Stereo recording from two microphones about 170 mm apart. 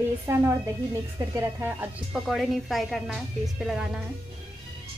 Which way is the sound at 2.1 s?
Centre (ahead or behind).